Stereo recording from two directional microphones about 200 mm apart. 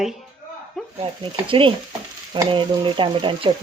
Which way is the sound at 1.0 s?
25° right (ahead or behind).